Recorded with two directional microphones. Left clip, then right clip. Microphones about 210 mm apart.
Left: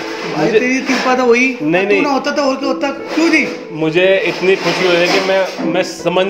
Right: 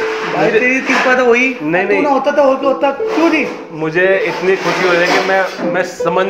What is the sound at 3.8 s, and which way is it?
A man's voice, 20° left (ahead or behind).